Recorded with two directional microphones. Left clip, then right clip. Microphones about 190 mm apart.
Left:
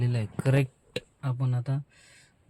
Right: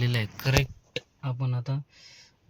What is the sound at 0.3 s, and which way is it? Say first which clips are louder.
Speech: left 1 dB; 35° left (ahead or behind).